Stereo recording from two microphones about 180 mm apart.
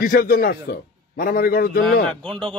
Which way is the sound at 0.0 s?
55° left (ahead or behind).